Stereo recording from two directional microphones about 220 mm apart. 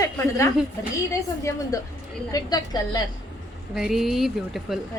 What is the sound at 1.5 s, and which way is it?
A woman's voice, 15° left (ahead or behind).